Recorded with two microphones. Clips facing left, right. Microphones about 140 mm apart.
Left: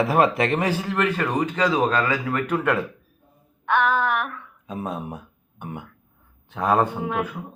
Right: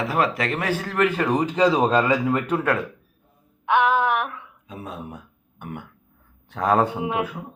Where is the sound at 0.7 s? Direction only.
10° left (ahead or behind).